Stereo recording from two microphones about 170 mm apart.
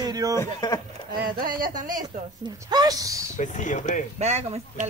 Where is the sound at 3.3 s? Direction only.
45° left (ahead or behind).